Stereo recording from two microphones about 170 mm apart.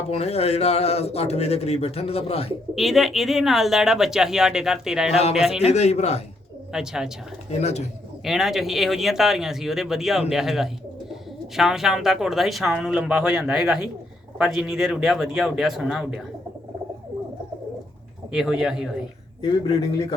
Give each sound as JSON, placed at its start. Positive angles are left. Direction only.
{"t": 0.1, "sound": "speech", "side_deg": 35}
{"t": 2.7, "sound": "speech", "side_deg": 0}
{"t": 5.6, "sound": "speech", "side_deg": 40}
{"t": 6.7, "sound": "speech", "side_deg": -5}
{"t": 7.6, "sound": "speech", "side_deg": 40}
{"t": 8.2, "sound": "speech", "side_deg": 0}
{"t": 18.3, "sound": "speech", "side_deg": -5}
{"t": 19.4, "sound": "speech", "side_deg": 30}